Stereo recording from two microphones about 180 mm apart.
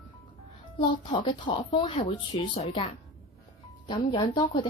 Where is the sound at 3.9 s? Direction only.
25° left (ahead or behind).